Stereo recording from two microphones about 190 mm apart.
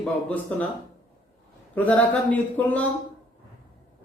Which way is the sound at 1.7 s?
5° left (ahead or behind).